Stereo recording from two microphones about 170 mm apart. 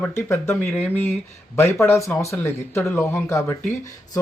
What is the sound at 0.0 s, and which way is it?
Speech, 15° left (ahead or behind).